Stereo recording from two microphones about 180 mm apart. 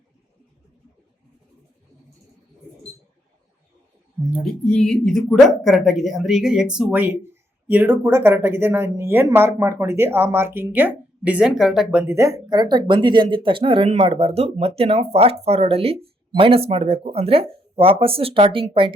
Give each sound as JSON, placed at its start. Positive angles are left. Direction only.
{"t": 4.6, "sound": "speech", "side_deg": 5}